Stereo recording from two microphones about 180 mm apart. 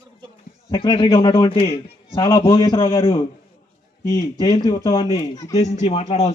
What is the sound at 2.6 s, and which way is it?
A man's voice, 20° left (ahead or behind).